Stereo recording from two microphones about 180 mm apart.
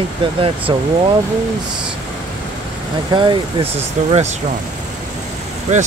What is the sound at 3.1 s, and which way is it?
Speech, 25° right (ahead or behind).